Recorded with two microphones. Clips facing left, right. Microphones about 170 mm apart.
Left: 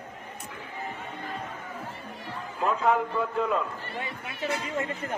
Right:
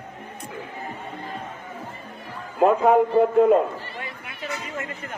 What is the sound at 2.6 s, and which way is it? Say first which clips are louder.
A man's voice: right 8 dB; 55° right (ahead or behind).